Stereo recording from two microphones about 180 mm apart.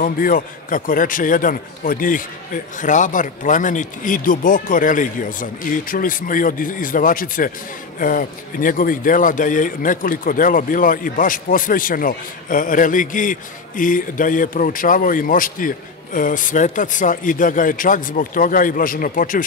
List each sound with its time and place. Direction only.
0.0 s speech: 50° left (ahead or behind)